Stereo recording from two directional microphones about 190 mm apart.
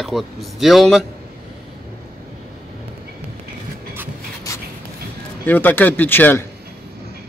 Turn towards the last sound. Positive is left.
turn(degrees=10)  # may be behind; listen again after turning